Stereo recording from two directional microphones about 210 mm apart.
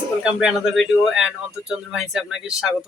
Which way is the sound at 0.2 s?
5° right (ahead or behind).